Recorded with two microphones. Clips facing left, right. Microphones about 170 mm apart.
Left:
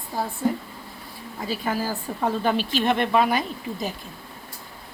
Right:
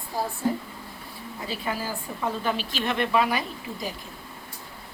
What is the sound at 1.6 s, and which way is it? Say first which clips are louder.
A woman's voice: left 4 dB; 40° left (ahead or behind).